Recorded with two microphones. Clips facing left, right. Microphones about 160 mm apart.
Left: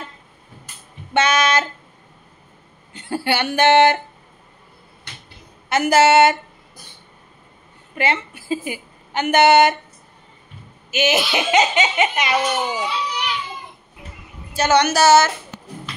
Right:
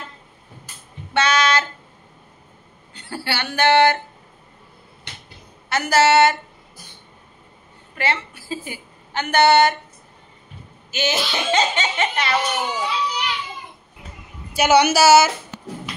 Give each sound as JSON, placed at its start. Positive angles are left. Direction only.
{"t": 1.1, "sound": "child singing", "side_deg": 20}
{"t": 2.9, "sound": "speech", "side_deg": 20}
{"t": 5.7, "sound": "a woman's voice", "side_deg": 20}
{"t": 7.9, "sound": "a woman's voice", "side_deg": 20}
{"t": 10.9, "sound": "speech", "side_deg": 20}
{"t": 14.5, "sound": "a woman's voice", "side_deg": -10}